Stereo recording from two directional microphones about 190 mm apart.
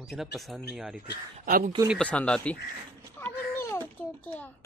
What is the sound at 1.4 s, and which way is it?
Speech, 50° right (ahead or behind).